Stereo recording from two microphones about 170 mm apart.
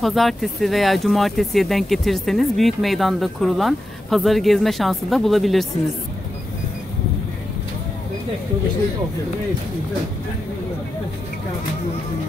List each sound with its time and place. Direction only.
0.0 s speech: centre (ahead or behind)